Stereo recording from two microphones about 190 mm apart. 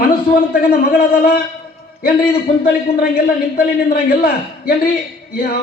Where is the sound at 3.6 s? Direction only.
50° left (ahead or behind).